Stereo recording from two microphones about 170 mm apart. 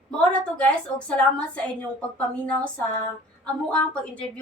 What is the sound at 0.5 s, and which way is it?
Speech, 5° left (ahead or behind).